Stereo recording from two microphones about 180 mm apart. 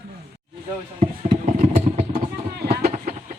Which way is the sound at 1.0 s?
45° right (ahead or behind).